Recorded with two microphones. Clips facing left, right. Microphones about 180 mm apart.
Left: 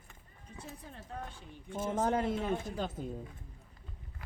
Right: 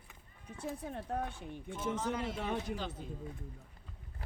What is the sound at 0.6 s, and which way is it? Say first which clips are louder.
Speech: right 10 dB; 60° right (ahead or behind).